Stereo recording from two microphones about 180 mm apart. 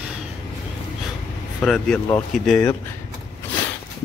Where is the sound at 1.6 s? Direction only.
5° left (ahead or behind).